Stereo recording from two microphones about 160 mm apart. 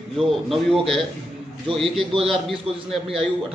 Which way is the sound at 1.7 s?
Centre (ahead or behind).